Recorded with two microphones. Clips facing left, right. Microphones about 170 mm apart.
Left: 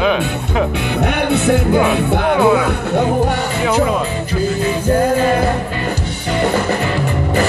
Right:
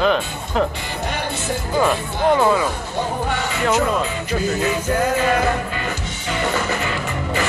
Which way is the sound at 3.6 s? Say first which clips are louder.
Left 3 dB; 5° left (ahead or behind).